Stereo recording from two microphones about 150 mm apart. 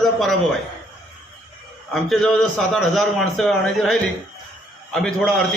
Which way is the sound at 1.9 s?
Centre (ahead or behind).